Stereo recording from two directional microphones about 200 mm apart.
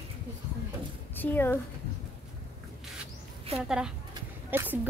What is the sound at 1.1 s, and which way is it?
Speech, 10° left (ahead or behind).